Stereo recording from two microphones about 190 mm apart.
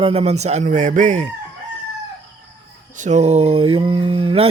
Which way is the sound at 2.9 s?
40° right (ahead or behind).